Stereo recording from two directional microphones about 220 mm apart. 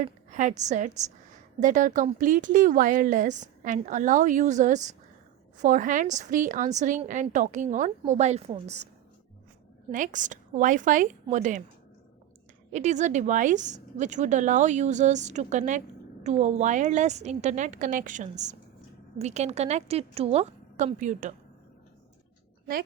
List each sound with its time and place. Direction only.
0.0 s a woman's voice: 35° right (ahead or behind)
9.9 s a woman's voice: 35° right (ahead or behind)
12.7 s a woman's voice: 30° right (ahead or behind)